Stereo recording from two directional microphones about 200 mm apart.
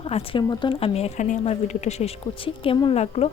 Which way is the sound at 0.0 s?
30° left (ahead or behind).